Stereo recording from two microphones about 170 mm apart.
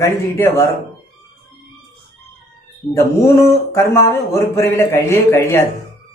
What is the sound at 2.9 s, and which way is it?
Speech, 15° left (ahead or behind).